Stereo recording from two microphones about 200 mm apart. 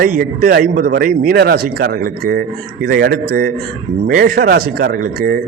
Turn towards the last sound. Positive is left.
turn(degrees=-50)  # may be behind; listen again after turning